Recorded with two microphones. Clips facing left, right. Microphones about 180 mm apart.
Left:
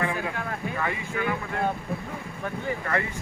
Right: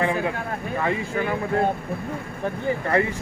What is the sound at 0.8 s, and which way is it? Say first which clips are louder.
Speech: right 7 dB; 35° right (ahead or behind).